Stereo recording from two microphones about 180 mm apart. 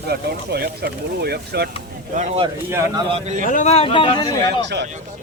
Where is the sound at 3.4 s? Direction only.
40° left (ahead or behind).